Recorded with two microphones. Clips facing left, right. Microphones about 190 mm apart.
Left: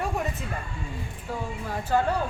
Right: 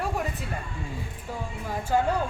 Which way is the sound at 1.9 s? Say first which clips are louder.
Even; 15° right (ahead or behind).